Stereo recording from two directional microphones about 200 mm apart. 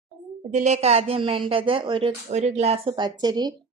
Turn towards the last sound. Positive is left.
turn(degrees=-20)  # may be behind; listen again after turning